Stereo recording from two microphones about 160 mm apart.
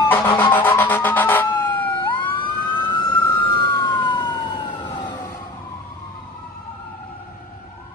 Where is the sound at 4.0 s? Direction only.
30° left (ahead or behind).